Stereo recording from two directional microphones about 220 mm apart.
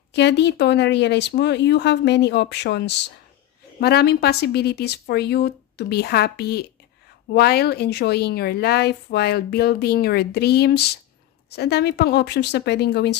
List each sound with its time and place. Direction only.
0.1 s speech: 50° left (ahead or behind)